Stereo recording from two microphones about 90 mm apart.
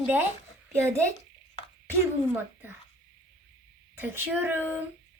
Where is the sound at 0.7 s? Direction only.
30° right (ahead or behind).